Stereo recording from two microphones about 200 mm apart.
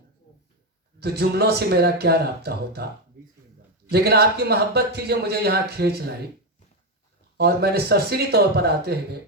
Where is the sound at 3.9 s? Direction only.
55° right (ahead or behind).